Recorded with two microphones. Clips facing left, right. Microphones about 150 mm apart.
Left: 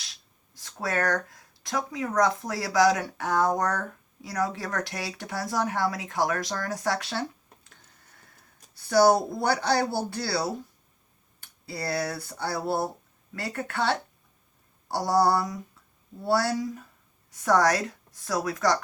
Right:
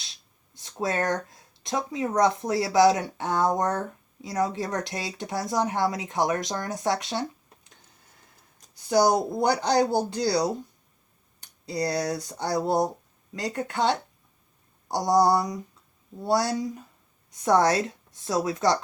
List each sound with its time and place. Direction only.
0.0 s speech: 25° right (ahead or behind)
8.7 s speech: 15° right (ahead or behind)
11.7 s speech: 20° right (ahead or behind)